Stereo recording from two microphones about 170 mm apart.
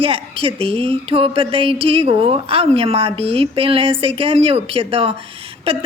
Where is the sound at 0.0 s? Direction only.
35° right (ahead or behind).